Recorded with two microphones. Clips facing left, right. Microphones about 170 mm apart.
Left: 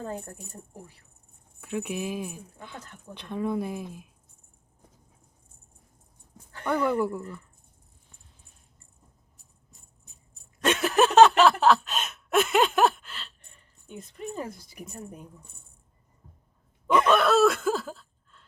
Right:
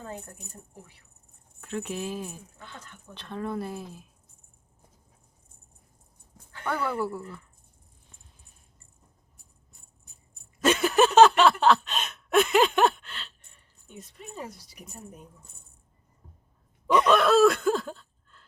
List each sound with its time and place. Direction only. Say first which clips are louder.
1.6 s speech: left 2 dB; 10° left (ahead or behind)
7.0 s speech: left 3 dB; 15° left (ahead or behind)
10.6 s a sound: right 1 dB; centre (ahead or behind)
14.3 s speech: left 4 dB; 55° left (ahead or behind)
16.9 s speech: right 1 dB; centre (ahead or behind)